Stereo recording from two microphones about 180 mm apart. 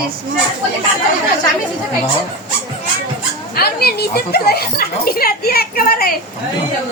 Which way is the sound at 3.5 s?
60° left (ahead or behind).